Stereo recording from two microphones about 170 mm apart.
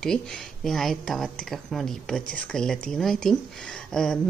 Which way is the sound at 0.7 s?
Centre (ahead or behind).